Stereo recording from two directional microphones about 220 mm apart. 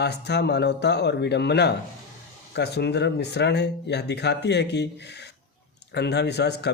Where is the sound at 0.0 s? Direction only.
50° left (ahead or behind).